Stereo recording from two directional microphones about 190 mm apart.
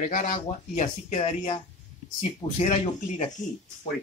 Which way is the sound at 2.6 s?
35° left (ahead or behind).